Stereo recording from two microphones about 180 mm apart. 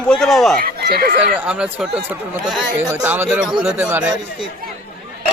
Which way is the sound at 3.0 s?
10° right (ahead or behind).